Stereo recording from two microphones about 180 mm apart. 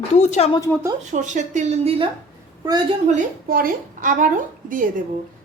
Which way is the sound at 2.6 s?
20° right (ahead or behind).